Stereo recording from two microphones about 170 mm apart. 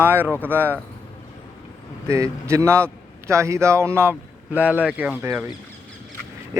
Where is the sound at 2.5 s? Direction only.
15° right (ahead or behind).